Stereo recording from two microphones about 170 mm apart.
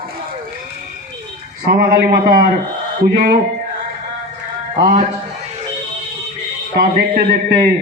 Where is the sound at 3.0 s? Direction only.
60° right (ahead or behind).